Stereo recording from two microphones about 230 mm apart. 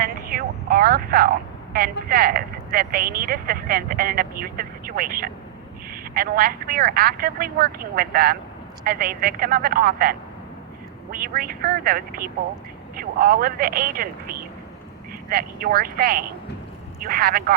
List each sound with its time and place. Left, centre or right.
0.0 s vehicle: right
1.7 s speech: right